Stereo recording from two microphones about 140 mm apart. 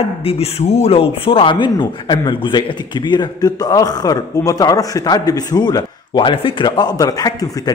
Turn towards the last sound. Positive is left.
turn(degrees=30)  # may be behind; listen again after turning